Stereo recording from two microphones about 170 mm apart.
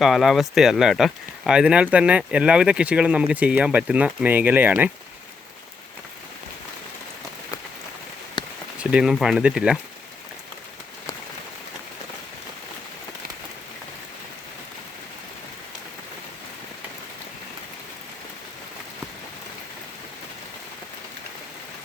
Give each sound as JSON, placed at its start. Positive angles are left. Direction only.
{"t": 0.0, "sound": "speech", "side_deg": 0}
{"t": 8.4, "sound": "rain on surface", "side_deg": 25}
{"t": 8.8, "sound": "speech", "side_deg": -5}